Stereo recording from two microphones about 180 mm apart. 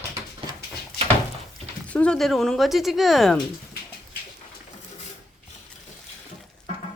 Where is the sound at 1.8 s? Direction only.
5° left (ahead or behind).